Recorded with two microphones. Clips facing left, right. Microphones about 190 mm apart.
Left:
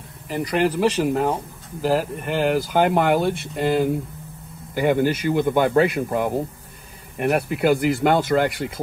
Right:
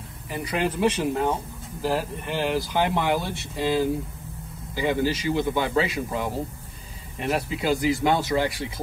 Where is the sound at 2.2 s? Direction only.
50° left (ahead or behind).